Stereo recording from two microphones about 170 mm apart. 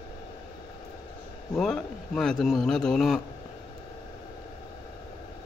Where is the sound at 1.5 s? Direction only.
5° left (ahead or behind).